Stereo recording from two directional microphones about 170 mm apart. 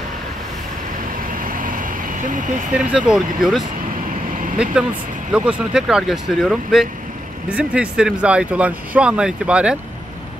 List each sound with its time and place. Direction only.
1.3 s vehicle: 55° right (ahead or behind)
2.7 s speech: 5° right (ahead or behind)
5.3 s speech: 5° right (ahead or behind)